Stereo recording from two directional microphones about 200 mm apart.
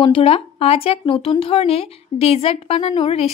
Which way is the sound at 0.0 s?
30° left (ahead or behind).